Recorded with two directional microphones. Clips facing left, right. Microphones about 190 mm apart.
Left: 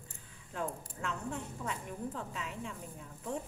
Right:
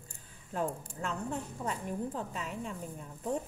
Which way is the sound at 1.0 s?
40° right (ahead or behind).